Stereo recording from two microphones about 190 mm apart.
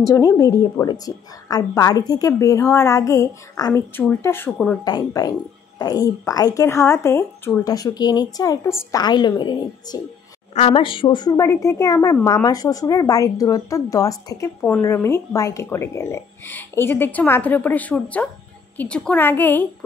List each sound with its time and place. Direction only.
0.0 s a woman's voice: 20° left (ahead or behind)
4.8 s a woman's voice: 20° left (ahead or behind)
10.5 s a woman's voice: 35° left (ahead or behind); by 19.7 s 10° left (ahead or behind)